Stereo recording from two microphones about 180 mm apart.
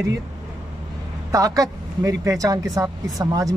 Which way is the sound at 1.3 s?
20° right (ahead or behind).